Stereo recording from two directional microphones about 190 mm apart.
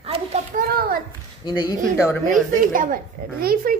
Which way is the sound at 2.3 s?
45° right (ahead or behind).